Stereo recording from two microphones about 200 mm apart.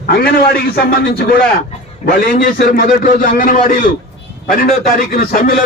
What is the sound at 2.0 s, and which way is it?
A man's voice, 45° left (ahead or behind).